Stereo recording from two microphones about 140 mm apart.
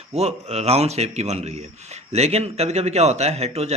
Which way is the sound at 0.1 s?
50° right (ahead or behind).